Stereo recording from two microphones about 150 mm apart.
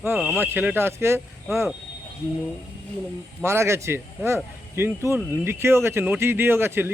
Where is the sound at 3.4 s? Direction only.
15° right (ahead or behind).